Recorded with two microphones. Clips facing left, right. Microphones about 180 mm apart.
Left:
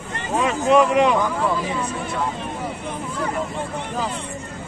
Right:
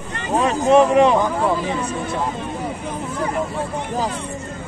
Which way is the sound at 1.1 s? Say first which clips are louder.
Right 3 dB; 25° right (ahead or behind).